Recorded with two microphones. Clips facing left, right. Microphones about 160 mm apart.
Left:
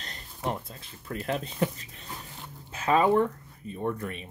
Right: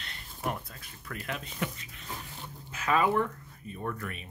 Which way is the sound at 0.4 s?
25° left (ahead or behind).